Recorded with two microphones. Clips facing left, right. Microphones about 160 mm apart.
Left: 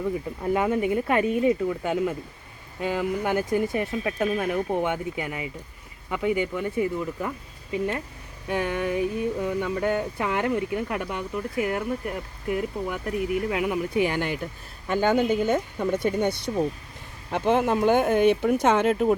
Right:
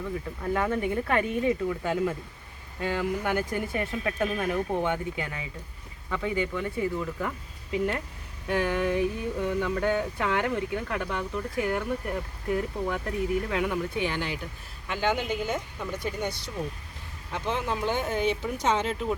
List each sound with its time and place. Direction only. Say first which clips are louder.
0.0 s speech: left 5 dB; 15° left (ahead or behind)
3.2 s speech: left 4 dB; 20° left (ahead or behind)
8.4 s speech: even; 10° left (ahead or behind)
14.1 s speech: left 5 dB; 50° left (ahead or behind)
15.4 s speech: left 8 dB; 60° left (ahead or behind)